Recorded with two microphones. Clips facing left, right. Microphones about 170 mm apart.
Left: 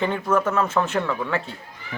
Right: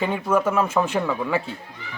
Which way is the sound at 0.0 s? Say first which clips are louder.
Right 1 dB; 10° right (ahead or behind).